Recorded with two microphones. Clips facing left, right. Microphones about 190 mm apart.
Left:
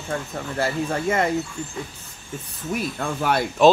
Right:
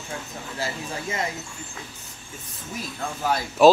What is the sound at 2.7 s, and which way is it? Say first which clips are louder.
Speech: left 6 dB; 65° left (ahead or behind).